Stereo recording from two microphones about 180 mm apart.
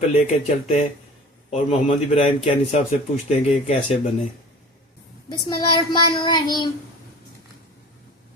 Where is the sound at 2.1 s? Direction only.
35° left (ahead or behind).